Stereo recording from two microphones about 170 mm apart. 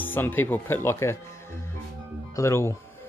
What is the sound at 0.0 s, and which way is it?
Speech, 10° left (ahead or behind).